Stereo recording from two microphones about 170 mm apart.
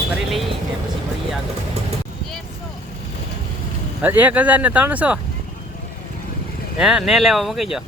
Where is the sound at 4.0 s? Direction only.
10° right (ahead or behind).